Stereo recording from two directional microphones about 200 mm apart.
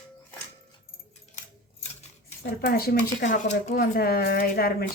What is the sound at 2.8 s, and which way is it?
Speech, 45° left (ahead or behind).